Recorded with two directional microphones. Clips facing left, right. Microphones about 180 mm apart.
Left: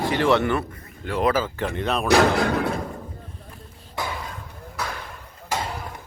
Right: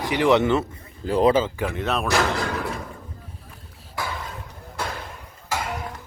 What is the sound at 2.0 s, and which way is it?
Speech, 60° left (ahead or behind).